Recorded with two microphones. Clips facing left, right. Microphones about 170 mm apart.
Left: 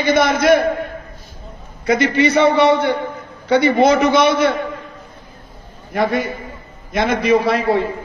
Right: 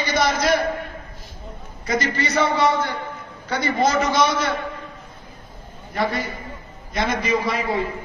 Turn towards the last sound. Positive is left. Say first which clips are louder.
# left 8 dB
turn(degrees=70)  # may be behind; listen again after turning